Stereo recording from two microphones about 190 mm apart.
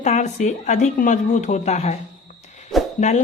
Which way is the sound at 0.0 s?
40° left (ahead or behind).